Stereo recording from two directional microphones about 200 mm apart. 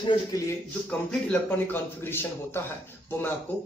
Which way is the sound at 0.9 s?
5° left (ahead or behind).